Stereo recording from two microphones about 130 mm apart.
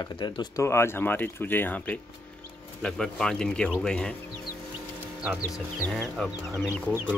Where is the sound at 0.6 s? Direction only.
20° left (ahead or behind).